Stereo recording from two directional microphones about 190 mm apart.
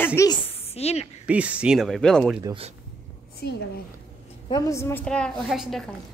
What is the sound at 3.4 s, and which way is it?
Speech, 60° left (ahead or behind).